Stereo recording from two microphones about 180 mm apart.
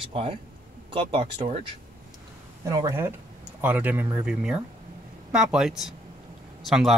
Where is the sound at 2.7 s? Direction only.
20° right (ahead or behind); by 6.9 s centre (ahead or behind).